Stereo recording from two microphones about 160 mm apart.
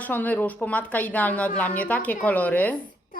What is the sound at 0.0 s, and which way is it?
Speech, 10° left (ahead or behind).